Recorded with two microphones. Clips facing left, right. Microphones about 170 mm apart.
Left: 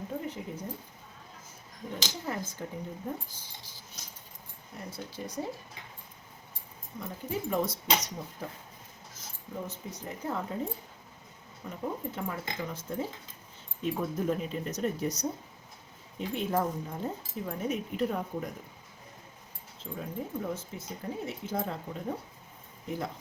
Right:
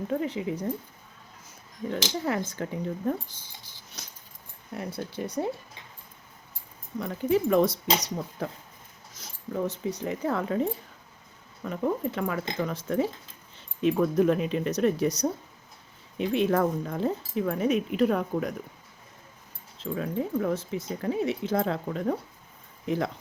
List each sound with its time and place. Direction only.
0.1 s speech: 85° right
1.9 s speech: 80° right
4.0 s keys jangling: 70° right (ahead or behind)
4.7 s speech: 65° right (ahead or behind)
7.0 s speech: 75° right (ahead or behind)
19.8 s speech: 85° right